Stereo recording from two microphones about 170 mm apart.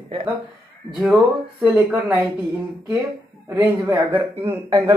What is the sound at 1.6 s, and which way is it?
Speech, 10° right (ahead or behind).